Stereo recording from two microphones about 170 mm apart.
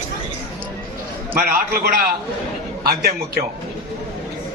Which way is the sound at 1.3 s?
60° right (ahead or behind).